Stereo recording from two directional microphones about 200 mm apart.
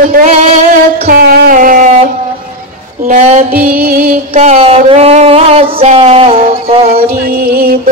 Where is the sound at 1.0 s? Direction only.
50° right (ahead or behind).